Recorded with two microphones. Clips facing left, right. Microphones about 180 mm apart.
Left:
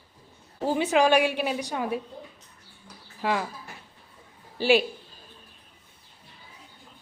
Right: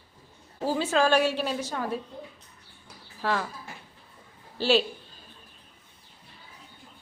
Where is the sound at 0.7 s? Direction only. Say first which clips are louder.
Left 2 dB; 15° left (ahead or behind).